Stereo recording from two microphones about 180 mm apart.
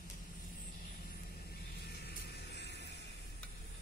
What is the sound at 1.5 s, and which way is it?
Vehicle, 60° left (ahead or behind).